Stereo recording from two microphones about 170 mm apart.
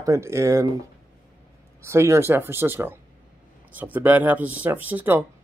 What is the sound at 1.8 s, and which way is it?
Speech, 15° right (ahead or behind).